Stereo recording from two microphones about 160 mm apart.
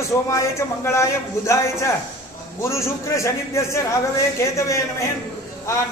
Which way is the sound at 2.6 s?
15° left (ahead or behind).